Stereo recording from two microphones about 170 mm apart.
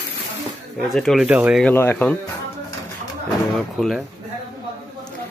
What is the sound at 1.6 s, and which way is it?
Speech, 10° left (ahead or behind).